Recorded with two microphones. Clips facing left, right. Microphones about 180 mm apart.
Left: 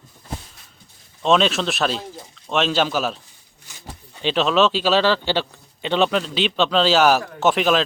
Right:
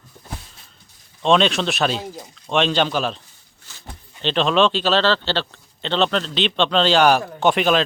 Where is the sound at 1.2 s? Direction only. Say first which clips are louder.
Right 1 dB; centre (ahead or behind).